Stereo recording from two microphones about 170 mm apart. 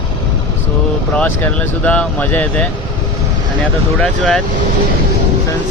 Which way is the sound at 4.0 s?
Centre (ahead or behind).